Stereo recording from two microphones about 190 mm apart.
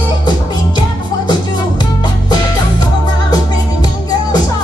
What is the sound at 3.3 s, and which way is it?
Music, 20° left (ahead or behind).